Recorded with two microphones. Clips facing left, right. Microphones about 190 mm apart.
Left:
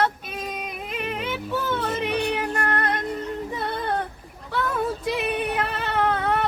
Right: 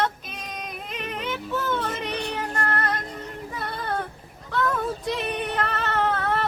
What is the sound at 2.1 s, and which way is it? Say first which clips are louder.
Music: left 5 dB; 60° left (ahead or behind).